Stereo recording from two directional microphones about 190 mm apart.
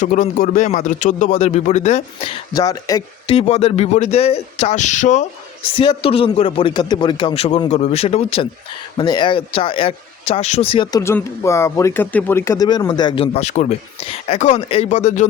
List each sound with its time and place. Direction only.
0.0 s speech: 40° left (ahead or behind)
5.6 s speech: 25° left (ahead or behind)
11.0 s speech: 15° left (ahead or behind); by 15.3 s 40° left (ahead or behind)